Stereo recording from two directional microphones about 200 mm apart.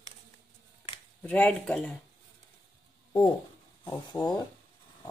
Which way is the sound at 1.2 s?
10° left (ahead or behind).